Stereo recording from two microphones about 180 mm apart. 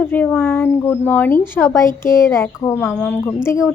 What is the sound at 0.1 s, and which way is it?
A woman's voice, 10° left (ahead or behind).